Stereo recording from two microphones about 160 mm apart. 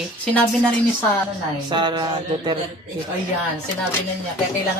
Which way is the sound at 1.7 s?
30° right (ahead or behind).